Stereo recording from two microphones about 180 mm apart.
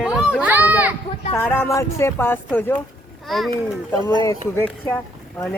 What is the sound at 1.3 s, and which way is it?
A child's voice, 10° left (ahead or behind).